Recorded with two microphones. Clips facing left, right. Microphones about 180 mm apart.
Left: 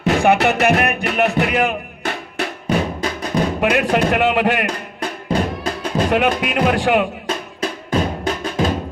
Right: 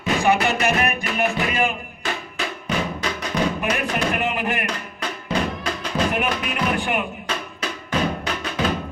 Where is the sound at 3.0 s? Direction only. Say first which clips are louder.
Left 5 dB; 30° left (ahead or behind).